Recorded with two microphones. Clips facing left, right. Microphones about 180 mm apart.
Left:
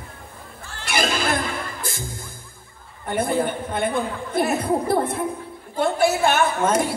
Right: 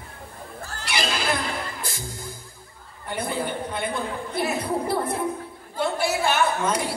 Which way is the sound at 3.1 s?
50° left (ahead or behind).